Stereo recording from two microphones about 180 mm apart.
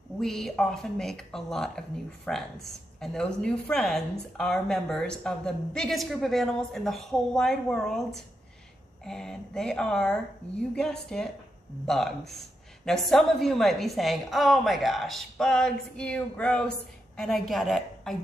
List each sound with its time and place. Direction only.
0.2 s speech: centre (ahead or behind)
9.0 s a woman's voice: 5° left (ahead or behind)